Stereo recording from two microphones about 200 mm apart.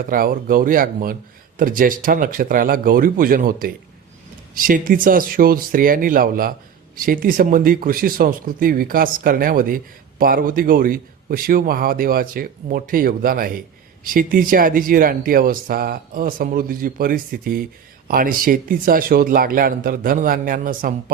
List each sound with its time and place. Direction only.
0.0 s speech: 45° right (ahead or behind)